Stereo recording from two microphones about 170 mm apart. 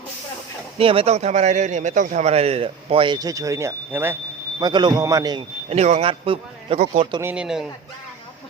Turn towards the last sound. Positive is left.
turn(degrees=-5)  # may be behind; listen again after turning